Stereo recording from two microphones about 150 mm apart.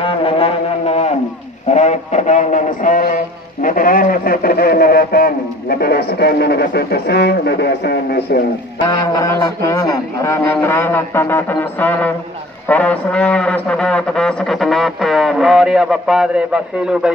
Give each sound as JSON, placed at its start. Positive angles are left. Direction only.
{"t": 0.0, "sound": "music", "side_deg": 40}
{"t": 1.7, "sound": "a man's voice", "side_deg": 50}
{"t": 8.8, "sound": "a sound", "side_deg": 20}
{"t": 12.6, "sound": "speech", "side_deg": 10}